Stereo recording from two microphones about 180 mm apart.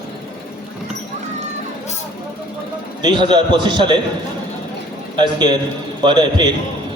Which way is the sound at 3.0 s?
25° right (ahead or behind).